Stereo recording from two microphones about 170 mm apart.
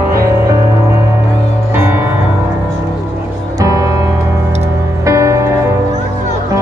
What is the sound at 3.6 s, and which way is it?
Music, 20° right (ahead or behind).